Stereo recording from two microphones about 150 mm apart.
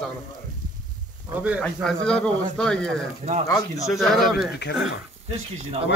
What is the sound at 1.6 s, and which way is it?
Speech, 5° left (ahead or behind).